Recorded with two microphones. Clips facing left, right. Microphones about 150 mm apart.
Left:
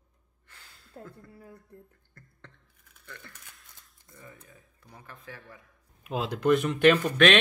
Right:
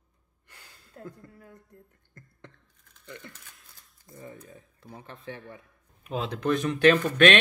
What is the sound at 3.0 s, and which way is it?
Speech, 15° right (ahead or behind).